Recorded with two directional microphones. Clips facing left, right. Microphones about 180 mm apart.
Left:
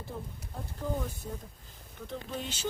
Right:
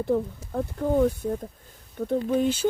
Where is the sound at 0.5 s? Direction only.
55° right (ahead or behind).